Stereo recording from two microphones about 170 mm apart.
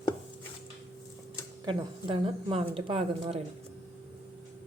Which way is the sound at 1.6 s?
30° right (ahead or behind).